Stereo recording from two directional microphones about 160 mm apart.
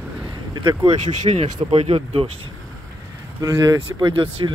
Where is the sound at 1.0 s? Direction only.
45° right (ahead or behind).